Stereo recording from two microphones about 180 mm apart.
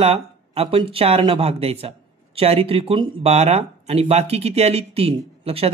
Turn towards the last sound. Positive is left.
turn(degrees=-35)  # may be behind; listen again after turning